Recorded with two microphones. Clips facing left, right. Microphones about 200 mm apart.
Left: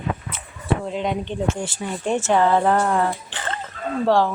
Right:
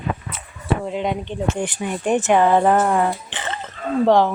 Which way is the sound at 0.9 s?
10° right (ahead or behind).